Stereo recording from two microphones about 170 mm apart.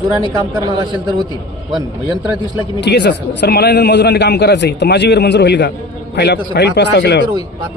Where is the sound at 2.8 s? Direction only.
90° left.